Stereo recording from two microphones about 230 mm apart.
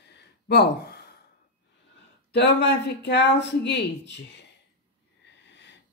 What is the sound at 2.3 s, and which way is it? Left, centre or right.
Speech, left.